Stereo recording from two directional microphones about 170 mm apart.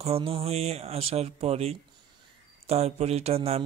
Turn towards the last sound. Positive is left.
turn(degrees=-40)  # may be behind; listen again after turning